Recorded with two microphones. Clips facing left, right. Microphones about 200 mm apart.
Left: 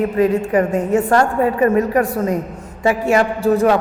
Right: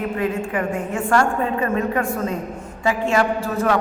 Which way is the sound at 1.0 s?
35° left (ahead or behind).